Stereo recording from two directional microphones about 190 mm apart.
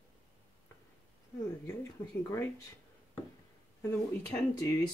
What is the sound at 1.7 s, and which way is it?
Speech, 15° left (ahead or behind).